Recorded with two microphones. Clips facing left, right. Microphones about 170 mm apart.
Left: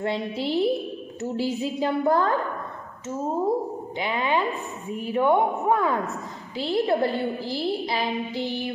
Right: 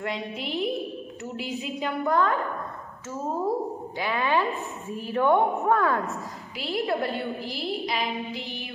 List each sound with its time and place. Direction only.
0.0 s a woman's voice: 30° left (ahead or behind)
4.0 s a woman's voice: 20° left (ahead or behind)
6.6 s a woman's voice: 30° left (ahead or behind)